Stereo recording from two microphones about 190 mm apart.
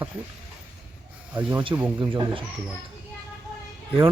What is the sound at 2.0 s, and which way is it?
Speech, 25° right (ahead or behind).